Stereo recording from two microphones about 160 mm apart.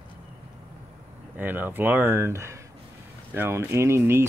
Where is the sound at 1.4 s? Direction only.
10° right (ahead or behind).